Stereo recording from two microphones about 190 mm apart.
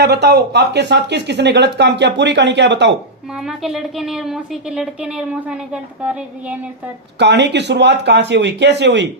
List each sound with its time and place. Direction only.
0.0 s speech: 60° right (ahead or behind)
3.3 s a woman's voice: centre (ahead or behind)
7.2 s speech: 65° right (ahead or behind)